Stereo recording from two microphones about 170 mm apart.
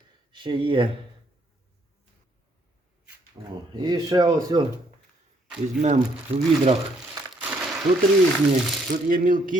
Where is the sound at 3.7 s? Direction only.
25° right (ahead or behind).